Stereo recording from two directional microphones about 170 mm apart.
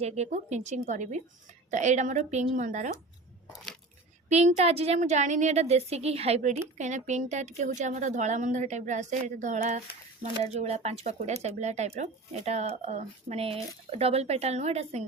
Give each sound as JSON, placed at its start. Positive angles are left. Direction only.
{"t": 0.0, "sound": "a woman's voice", "side_deg": -40}
{"t": 3.4, "sound": "a sound", "side_deg": -5}
{"t": 4.3, "sound": "a woman's voice", "side_deg": -40}